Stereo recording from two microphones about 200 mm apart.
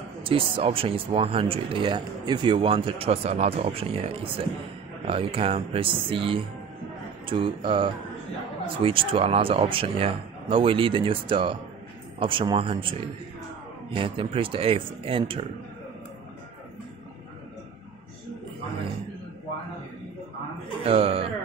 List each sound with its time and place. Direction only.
0.2 s speech: 25° right (ahead or behind)
13.9 s speech: 25° right (ahead or behind)
20.8 s speech: 30° right (ahead or behind)